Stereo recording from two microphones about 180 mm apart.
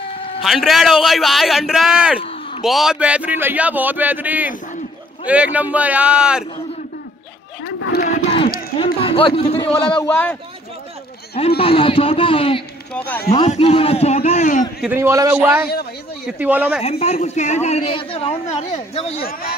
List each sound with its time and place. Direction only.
0.4 s a man's voice: centre (ahead or behind)
2.1 s a sound: 35° left (ahead or behind)
2.6 s speech: centre (ahead or behind)
7.6 s speech: 60° left (ahead or behind)
8.7 s a man's voice: 30° left (ahead or behind)
11.3 s speech: 30° left (ahead or behind)
12.9 s speech: 10° left (ahead or behind)
13.5 s speech: 35° left (ahead or behind)
14.8 s speech: 10° right (ahead or behind)
16.8 s speech: 35° left (ahead or behind)